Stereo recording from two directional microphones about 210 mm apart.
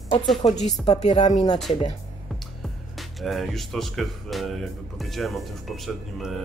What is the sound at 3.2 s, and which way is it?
Speech, centre (ahead or behind).